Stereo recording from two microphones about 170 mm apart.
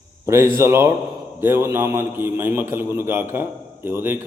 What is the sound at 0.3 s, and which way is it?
A man's voice, 15° right (ahead or behind).